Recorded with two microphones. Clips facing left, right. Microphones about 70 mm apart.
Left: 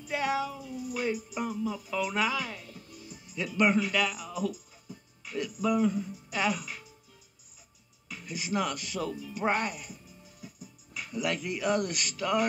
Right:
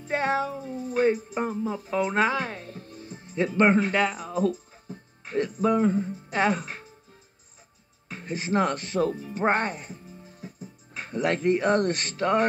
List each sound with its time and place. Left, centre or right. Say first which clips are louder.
0.0 s speech: right 4 dB; right
8.1 s speech: right 6 dB; right